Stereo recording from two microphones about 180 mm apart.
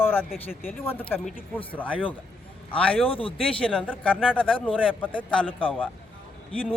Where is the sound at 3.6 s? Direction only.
5° left (ahead or behind).